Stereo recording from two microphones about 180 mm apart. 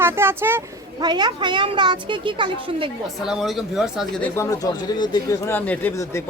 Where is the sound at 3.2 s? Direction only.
5° right (ahead or behind).